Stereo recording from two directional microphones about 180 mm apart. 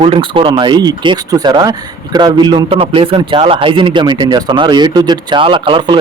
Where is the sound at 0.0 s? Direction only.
30° right (ahead or behind).